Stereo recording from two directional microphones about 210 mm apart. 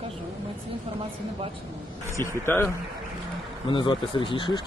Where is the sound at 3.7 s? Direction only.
25° left (ahead or behind).